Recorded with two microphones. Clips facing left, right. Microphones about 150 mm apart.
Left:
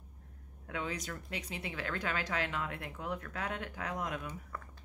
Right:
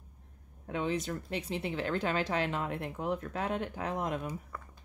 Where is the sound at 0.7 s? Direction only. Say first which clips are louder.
Right 6 dB; 25° right (ahead or behind).